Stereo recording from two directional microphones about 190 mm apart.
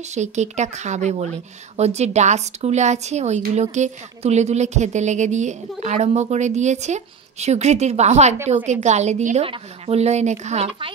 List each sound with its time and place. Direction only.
0.1 s a woman's voice: 35° right (ahead or behind)